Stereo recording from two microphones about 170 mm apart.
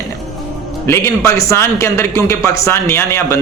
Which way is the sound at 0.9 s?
20° left (ahead or behind).